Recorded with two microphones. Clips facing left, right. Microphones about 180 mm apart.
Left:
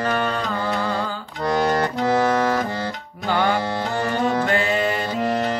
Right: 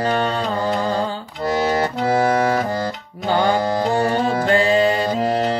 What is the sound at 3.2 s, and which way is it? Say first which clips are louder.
Music: right 3 dB; 35° right (ahead or behind).